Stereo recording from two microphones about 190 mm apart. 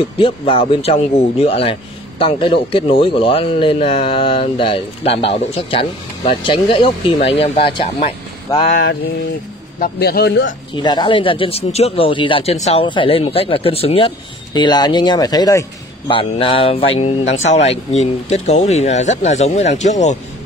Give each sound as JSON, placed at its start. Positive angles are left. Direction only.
{"t": 0.0, "sound": "speech", "side_deg": 30}
{"t": 8.6, "sound": "a sound", "side_deg": 50}
{"t": 9.8, "sound": "speech", "side_deg": 55}
{"t": 10.8, "sound": "speech", "side_deg": 25}